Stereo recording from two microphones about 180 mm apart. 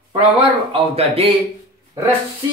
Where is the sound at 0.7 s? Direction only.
30° right (ahead or behind).